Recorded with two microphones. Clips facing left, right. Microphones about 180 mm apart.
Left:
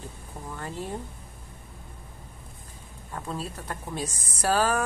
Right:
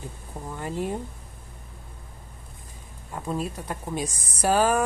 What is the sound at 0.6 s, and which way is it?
Speech, 15° right (ahead or behind).